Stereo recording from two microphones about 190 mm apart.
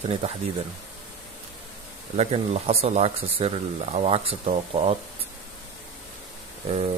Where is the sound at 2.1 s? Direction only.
35° right (ahead or behind).